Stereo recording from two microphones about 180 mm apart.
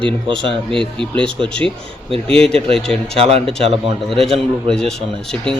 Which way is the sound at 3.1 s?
30° right (ahead or behind).